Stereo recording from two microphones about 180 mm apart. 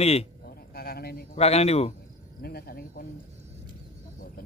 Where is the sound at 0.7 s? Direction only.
60° left (ahead or behind).